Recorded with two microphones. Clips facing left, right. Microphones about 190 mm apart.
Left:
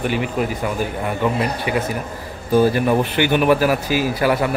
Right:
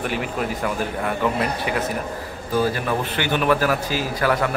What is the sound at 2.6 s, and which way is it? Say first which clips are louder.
A man's voice: left 6 dB; 20° left (ahead or behind).